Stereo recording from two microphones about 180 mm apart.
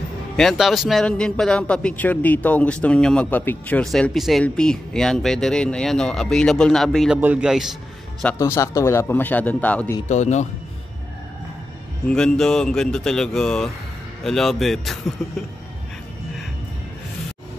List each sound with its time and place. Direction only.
0.4 s a man's voice: centre (ahead or behind)
8.4 s speech: 15° left (ahead or behind)
10.0 s a man's voice: 40° left (ahead or behind)
12.1 s a man's voice: 5° left (ahead or behind)